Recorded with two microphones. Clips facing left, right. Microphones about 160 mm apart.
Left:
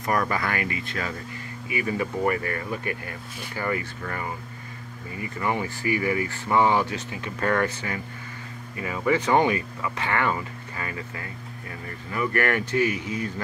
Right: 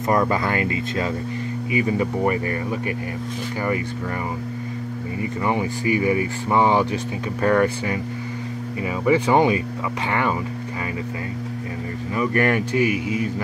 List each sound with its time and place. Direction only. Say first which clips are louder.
0.0 s speech: right 5 dB; 25° right (ahead or behind)
5.2 s speech: right 4 dB; 20° right (ahead or behind)
12.1 s speech: right 4 dB; 20° right (ahead or behind)